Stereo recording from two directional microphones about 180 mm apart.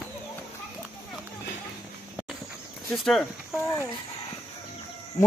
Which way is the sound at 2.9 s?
Centre (ahead or behind).